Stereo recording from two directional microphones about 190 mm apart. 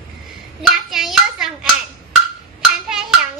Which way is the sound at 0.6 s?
Centre (ahead or behind).